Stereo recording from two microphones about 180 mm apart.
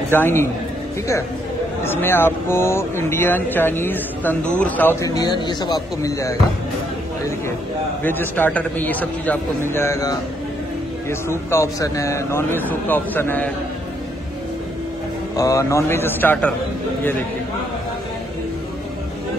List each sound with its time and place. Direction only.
0.1 s speech: 10° left (ahead or behind)
1.8 s speech: 10° left (ahead or behind)
8.0 s speech: 10° left (ahead or behind)
15.3 s speech: 20° left (ahead or behind)